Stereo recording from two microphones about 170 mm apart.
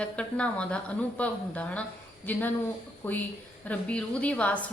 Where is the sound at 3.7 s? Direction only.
5° left (ahead or behind).